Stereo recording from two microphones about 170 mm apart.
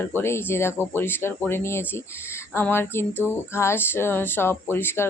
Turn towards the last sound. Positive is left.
turn(degrees=15)  # may be behind; listen again after turning